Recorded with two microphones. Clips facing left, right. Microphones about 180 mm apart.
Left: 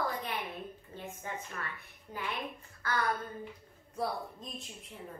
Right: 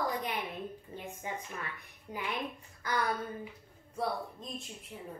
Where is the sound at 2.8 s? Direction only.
15° right (ahead or behind).